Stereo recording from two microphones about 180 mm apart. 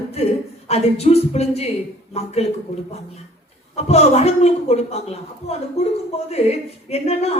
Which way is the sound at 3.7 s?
35° left (ahead or behind).